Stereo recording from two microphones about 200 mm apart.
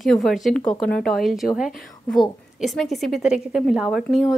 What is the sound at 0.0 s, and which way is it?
Speech, centre (ahead or behind).